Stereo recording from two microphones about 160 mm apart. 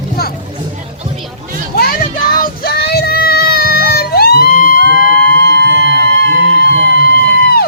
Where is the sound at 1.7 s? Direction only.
65° left (ahead or behind).